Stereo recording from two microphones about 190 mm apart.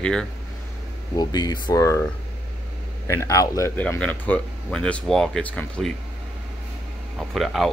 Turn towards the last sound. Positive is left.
turn(degrees=0)  # may be behind; listen again after turning